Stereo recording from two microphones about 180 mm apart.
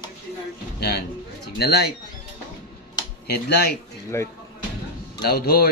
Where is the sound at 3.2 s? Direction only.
65° left (ahead or behind).